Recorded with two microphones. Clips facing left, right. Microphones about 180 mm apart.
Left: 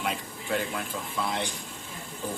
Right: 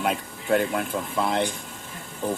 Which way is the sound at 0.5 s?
55° right (ahead or behind).